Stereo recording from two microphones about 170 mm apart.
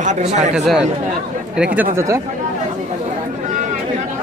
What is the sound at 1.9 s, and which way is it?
Speech, 20° right (ahead or behind).